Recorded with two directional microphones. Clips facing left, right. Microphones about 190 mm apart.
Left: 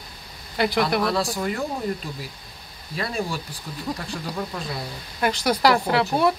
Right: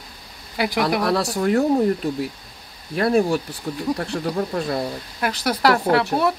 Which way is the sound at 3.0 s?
60° right (ahead or behind).